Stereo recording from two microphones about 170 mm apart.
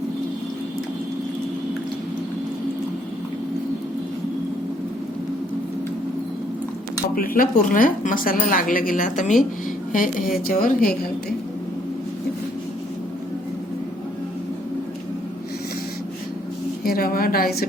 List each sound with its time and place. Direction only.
7.2 s a woman's voice: 55° left (ahead or behind)
16.8 s a woman's voice: 60° left (ahead or behind)